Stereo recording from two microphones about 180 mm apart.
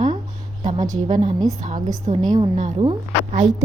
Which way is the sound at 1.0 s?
35° right (ahead or behind).